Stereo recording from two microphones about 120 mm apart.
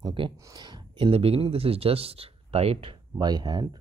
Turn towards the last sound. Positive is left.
turn(degrees=-35)  # may be behind; listen again after turning